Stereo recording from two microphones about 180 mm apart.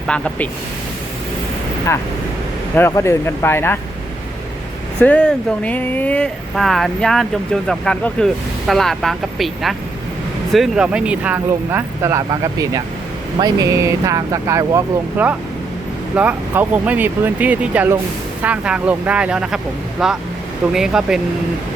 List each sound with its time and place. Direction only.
0.1 s speech: 5° left (ahead or behind)
2.7 s speech: 15° left (ahead or behind)
4.9 s speech: 5° left (ahead or behind)